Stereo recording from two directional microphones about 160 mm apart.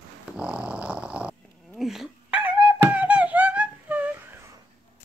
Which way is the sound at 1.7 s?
Centre (ahead or behind).